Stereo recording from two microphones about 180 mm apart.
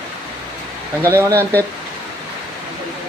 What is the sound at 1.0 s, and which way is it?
Speech, 15° right (ahead or behind).